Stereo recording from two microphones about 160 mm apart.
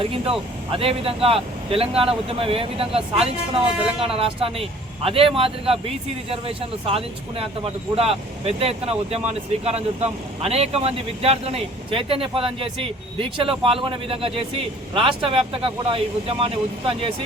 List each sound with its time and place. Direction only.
0.3 s a man's voice: 35° right (ahead or behind)